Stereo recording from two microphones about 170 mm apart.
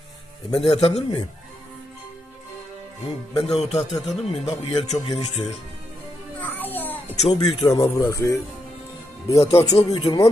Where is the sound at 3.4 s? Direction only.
35° left (ahead or behind).